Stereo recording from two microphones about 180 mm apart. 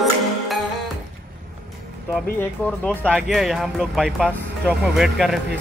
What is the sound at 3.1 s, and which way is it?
Speech, centre (ahead or behind).